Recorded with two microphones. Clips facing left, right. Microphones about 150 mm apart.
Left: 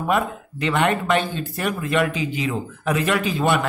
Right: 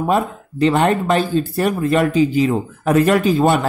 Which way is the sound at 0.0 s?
35° right (ahead or behind).